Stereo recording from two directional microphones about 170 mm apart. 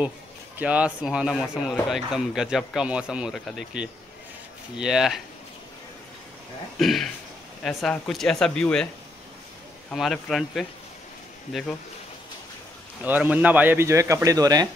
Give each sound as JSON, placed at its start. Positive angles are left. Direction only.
{"t": 0.6, "sound": "speech", "side_deg": -10}
{"t": 6.8, "sound": "speech", "side_deg": 0}
{"t": 9.9, "sound": "speech", "side_deg": 0}
{"t": 13.0, "sound": "a man's voice", "side_deg": -10}